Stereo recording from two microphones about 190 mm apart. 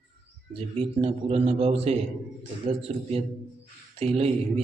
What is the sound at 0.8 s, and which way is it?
A man's voice, 30° right (ahead or behind).